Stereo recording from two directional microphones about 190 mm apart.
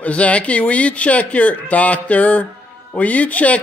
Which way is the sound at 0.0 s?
5° left (ahead or behind).